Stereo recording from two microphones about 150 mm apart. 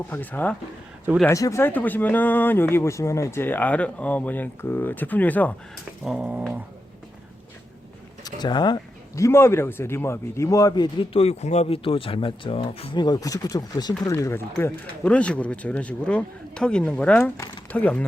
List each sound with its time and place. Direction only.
0.1 s speech: 10° left (ahead or behind)
6.1 s dog: 5° right (ahead or behind)
8.2 s speech: 30° left (ahead or behind)
11.1 s speech: 40° left (ahead or behind); by 18.0 s 10° left (ahead or behind)